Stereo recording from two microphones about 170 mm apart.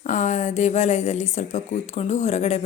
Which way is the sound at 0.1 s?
45° left (ahead or behind).